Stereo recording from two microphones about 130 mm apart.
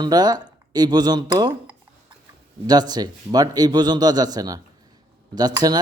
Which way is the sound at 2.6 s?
30° right (ahead or behind).